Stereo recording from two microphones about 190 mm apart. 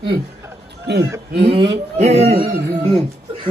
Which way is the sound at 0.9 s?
65° right (ahead or behind).